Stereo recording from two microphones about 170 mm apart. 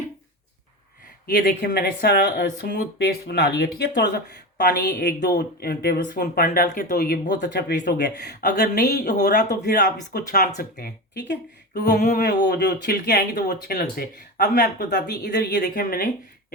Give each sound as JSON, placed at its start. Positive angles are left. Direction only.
{"t": 1.3, "sound": "speech", "side_deg": 70}
{"t": 11.9, "sound": "speech", "side_deg": 45}
{"t": 12.2, "sound": "speech", "side_deg": 70}
{"t": 15.5, "sound": "speech", "side_deg": 55}